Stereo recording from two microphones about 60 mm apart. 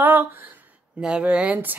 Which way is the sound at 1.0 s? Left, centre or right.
Centre.